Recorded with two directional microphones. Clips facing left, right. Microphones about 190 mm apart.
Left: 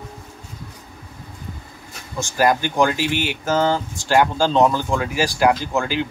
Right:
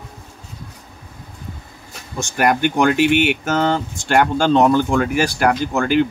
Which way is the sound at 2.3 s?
65° right (ahead or behind).